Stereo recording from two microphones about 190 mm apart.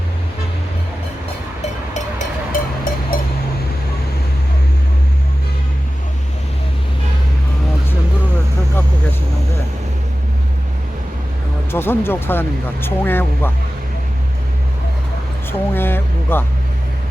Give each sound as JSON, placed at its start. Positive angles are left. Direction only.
{"t": 1.9, "sound": "music", "side_deg": 45}
{"t": 11.7, "sound": "speech", "side_deg": 10}
{"t": 15.5, "sound": "speech", "side_deg": 10}